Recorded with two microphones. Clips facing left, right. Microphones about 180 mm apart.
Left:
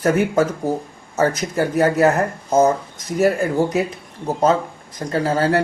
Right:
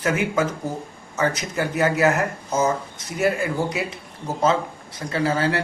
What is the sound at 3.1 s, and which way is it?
Speech, 40° left (ahead or behind).